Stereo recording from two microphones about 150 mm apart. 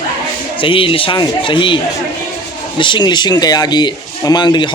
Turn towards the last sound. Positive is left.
turn(degrees=30)  # may be behind; listen again after turning